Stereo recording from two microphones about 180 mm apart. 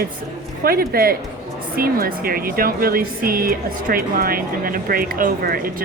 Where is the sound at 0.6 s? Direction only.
55° right (ahead or behind).